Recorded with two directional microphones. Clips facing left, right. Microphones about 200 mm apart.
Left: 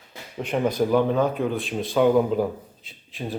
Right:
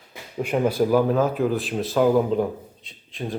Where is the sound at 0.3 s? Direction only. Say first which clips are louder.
Right 2 dB; 5° right (ahead or behind).